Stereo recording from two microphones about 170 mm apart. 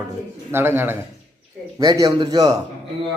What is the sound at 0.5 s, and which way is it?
A man's voice, 15° right (ahead or behind).